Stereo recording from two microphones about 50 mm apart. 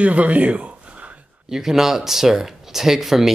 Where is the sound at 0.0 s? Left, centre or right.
Right.